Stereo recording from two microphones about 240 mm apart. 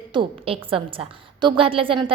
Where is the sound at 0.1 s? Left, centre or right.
Right.